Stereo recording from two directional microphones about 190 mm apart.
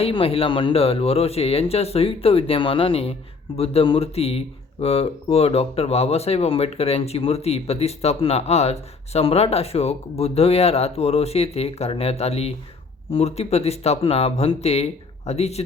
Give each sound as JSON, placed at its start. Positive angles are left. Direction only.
{"t": 0.0, "sound": "speech", "side_deg": 30}